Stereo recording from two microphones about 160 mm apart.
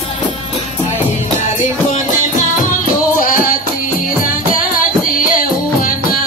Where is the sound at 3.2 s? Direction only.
55° left (ahead or behind).